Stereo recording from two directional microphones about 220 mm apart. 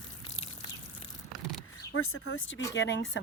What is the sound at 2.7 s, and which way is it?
Speech, 55° left (ahead or behind).